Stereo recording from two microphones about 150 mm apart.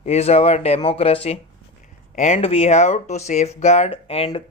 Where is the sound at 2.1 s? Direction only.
50° left (ahead or behind).